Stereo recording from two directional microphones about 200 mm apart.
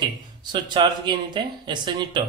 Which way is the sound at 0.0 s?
20° right (ahead or behind).